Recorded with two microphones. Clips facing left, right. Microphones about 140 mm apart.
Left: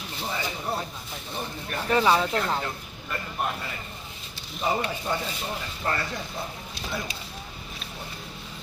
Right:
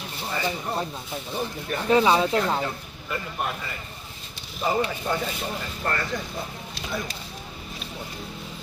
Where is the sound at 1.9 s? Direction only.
15° right (ahead or behind).